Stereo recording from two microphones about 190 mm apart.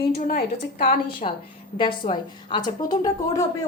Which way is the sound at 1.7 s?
25° left (ahead or behind).